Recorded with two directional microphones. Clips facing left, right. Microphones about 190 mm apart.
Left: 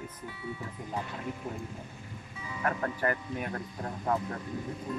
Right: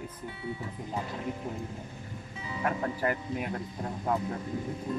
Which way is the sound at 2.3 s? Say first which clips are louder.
Right 3 dB; 20° right (ahead or behind).